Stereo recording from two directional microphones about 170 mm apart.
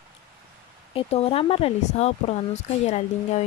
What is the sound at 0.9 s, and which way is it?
Speech, 35° left (ahead or behind).